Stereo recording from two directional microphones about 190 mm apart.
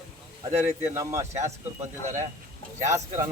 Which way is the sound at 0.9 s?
15° right (ahead or behind).